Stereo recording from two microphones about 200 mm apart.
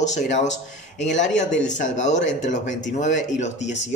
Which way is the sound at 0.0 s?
35° left (ahead or behind).